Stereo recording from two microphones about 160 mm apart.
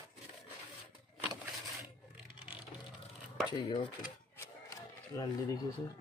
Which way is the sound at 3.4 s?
25° left (ahead or behind).